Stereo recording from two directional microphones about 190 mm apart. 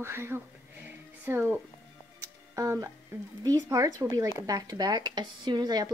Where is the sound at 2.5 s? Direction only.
15° right (ahead or behind).